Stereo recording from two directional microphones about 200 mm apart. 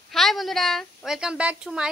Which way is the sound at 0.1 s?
Centre (ahead or behind).